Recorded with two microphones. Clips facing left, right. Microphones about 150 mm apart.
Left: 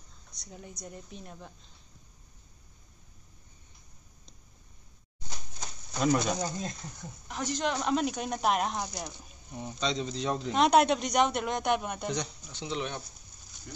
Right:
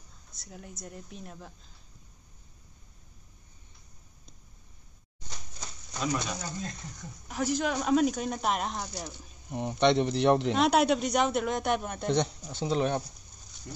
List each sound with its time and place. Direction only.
0.4 s a man's voice: centre (ahead or behind)
6.1 s speech: 40° left (ahead or behind)
7.3 s a man's voice: 5° right (ahead or behind)
8.7 s speech: 15° left (ahead or behind)
9.5 s speech: 65° right (ahead or behind)
10.5 s a man's voice: centre (ahead or behind)
12.1 s speech: 55° right (ahead or behind)